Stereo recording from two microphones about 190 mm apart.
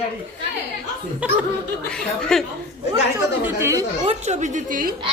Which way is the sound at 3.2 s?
15° right (ahead or behind).